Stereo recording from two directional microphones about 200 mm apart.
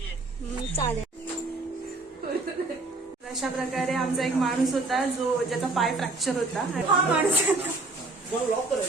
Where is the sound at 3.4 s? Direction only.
Centre (ahead or behind).